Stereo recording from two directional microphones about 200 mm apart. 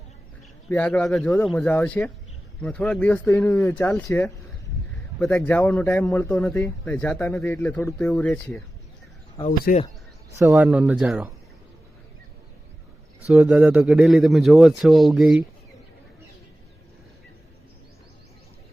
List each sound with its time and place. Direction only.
0.7 s a man's voice: 10° left (ahead or behind)
9.5 s speech: 45° left (ahead or behind)
10.3 s speech: 10° right (ahead or behind)
13.2 s a man's voice: 5° right (ahead or behind)